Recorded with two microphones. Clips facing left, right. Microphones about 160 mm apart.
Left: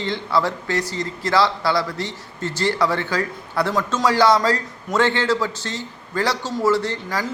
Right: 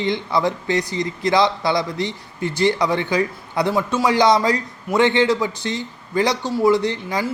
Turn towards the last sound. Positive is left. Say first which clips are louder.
# right 3 dB
turn(degrees=-15)  # may be behind; listen again after turning